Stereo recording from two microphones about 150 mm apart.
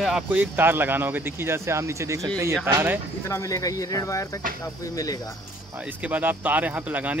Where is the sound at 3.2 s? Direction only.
20° left (ahead or behind).